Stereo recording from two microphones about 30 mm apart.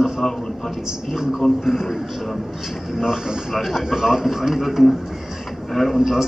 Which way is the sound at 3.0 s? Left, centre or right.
Right.